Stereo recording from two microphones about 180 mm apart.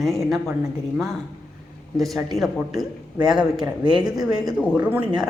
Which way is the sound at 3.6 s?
25° right (ahead or behind).